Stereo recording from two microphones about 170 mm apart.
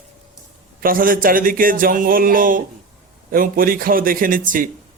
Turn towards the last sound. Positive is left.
turn(degrees=-55)  # may be behind; listen again after turning